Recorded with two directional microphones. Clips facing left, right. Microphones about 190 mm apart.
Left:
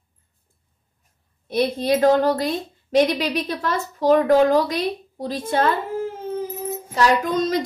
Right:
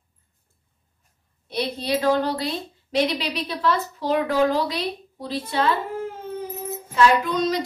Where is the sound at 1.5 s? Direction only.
50° left (ahead or behind).